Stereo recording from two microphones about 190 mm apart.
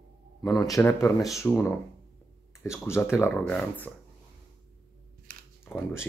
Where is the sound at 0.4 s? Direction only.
20° left (ahead or behind).